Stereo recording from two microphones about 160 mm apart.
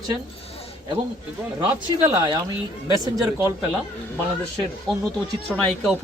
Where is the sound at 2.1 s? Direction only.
25° right (ahead or behind).